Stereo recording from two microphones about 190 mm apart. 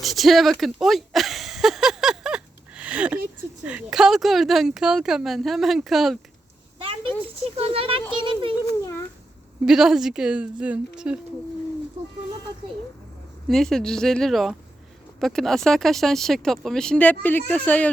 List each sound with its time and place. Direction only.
0.0 s a sound: centre (ahead or behind)
3.6 s speech: 5° right (ahead or behind)
7.6 s speech: 30° right (ahead or behind)
9.6 s speech: centre (ahead or behind)
13.5 s speech: centre (ahead or behind)